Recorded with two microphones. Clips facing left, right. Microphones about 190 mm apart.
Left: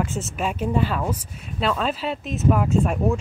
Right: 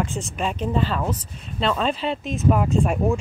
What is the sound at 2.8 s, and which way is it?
Speech, 10° right (ahead or behind).